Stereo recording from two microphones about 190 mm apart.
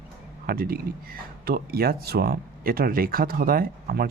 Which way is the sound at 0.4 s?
50° right (ahead or behind).